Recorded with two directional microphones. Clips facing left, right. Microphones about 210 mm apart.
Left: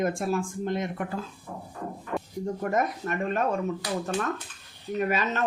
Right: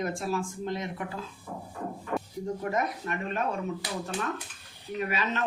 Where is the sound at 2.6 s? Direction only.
45° left (ahead or behind).